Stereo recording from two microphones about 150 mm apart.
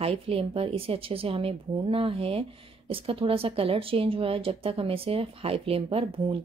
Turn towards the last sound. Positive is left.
turn(degrees=-35)  # may be behind; listen again after turning